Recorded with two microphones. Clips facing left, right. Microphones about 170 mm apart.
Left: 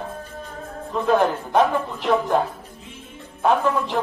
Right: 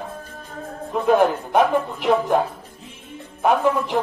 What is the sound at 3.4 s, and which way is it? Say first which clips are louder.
Speech: right 1 dB; 15° right (ahead or behind).